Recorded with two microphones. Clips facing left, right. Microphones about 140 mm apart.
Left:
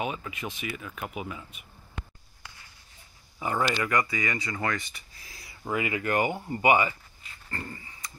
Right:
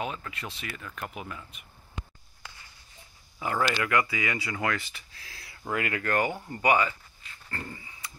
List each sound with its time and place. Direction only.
0.0 s speech: 10° left (ahead or behind)
2.0 s a sound: 55° left (ahead or behind)
3.3 s speech: 5° left (ahead or behind)
7.5 s dog: centre (ahead or behind)